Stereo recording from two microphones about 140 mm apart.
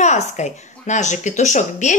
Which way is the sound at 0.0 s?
55° left (ahead or behind).